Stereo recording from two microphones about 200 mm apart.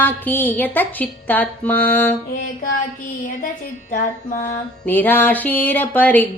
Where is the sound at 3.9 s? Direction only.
40° left (ahead or behind).